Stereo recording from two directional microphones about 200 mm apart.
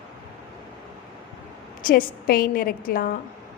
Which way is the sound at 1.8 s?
45° left (ahead or behind).